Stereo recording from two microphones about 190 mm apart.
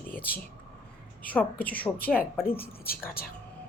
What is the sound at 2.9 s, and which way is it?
Speech, 50° left (ahead or behind).